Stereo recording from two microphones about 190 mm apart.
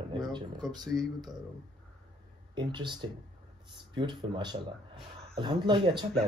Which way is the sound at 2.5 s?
25° right (ahead or behind).